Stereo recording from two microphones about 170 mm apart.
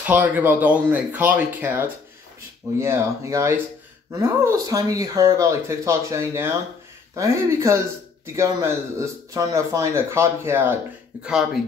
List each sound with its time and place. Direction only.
0.0 s speech: 10° right (ahead or behind)